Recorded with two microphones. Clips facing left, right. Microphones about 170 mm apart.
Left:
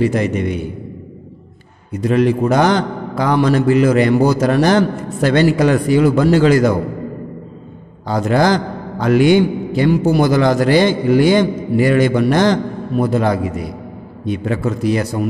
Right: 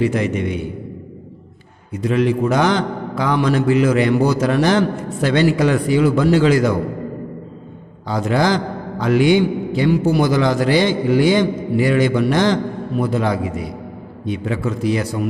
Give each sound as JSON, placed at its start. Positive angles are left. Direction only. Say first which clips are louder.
{"t": 0.0, "sound": "a man's voice", "louder": "left 2 dB", "side_deg": 40}
{"t": 1.9, "sound": "a man's voice", "louder": "left 3 dB", "side_deg": 40}
{"t": 8.1, "sound": "a man's voice", "louder": "left 3 dB", "side_deg": 45}